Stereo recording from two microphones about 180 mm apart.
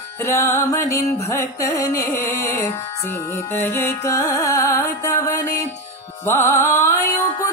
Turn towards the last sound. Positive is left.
turn(degrees=15)  # may be behind; listen again after turning